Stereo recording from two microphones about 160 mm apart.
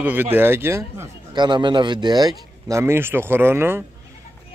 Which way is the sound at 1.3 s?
30° right (ahead or behind).